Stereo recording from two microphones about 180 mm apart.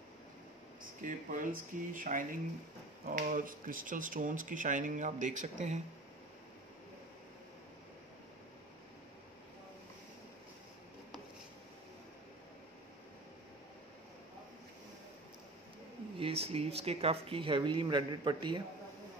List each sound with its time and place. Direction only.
1.0 s speech: 50° right (ahead or behind)
16.2 s speech: 30° right (ahead or behind)